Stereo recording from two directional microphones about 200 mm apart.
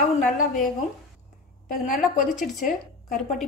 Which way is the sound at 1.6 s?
40° left (ahead or behind).